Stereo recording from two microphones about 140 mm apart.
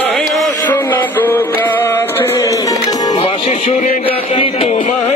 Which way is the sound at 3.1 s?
45° left (ahead or behind).